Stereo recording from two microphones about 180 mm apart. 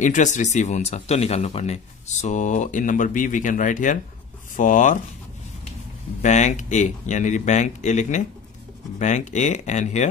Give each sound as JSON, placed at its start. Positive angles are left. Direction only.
{"t": 0.0, "sound": "speech", "side_deg": 45}
{"t": 6.2, "sound": "speech", "side_deg": 40}